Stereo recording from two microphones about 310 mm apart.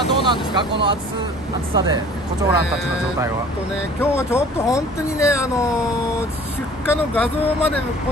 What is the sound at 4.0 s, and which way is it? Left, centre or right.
Speech, centre.